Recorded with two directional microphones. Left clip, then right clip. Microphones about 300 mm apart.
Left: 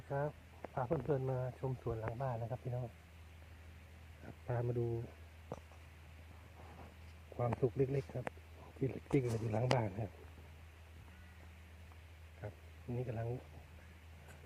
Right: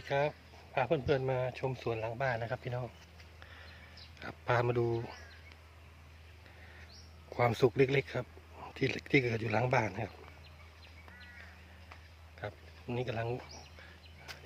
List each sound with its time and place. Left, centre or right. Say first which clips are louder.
0.1 s speech: right 8 dB; centre
4.2 s a sound: right 11 dB; right
4.8 s speech: right 7 dB; right
7.3 s speech: right 8 dB; right
12.4 s speech: right 8 dB; centre